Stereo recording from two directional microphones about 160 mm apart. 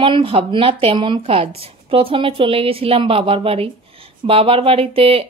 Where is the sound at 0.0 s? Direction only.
35° right (ahead or behind).